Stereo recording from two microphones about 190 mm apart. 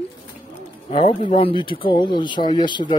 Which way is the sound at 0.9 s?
30° left (ahead or behind).